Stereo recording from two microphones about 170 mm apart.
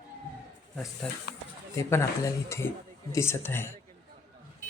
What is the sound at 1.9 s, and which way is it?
Speech, 15° left (ahead or behind).